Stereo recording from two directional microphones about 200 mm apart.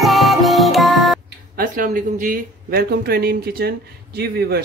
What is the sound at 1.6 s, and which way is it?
Speech, 40° right (ahead or behind).